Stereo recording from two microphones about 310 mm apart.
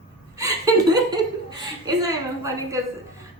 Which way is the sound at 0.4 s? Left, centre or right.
Centre.